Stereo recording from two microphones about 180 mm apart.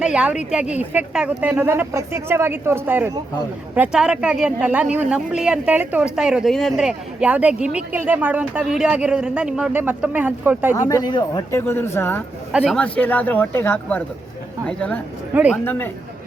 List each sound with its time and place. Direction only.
0.0 s speech: 5° right (ahead or behind)
10.8 s speech: 20° left (ahead or behind)
12.5 s speech: 5° right (ahead or behind)